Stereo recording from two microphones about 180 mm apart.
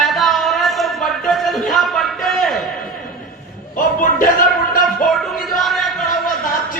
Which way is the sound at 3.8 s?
50° left (ahead or behind).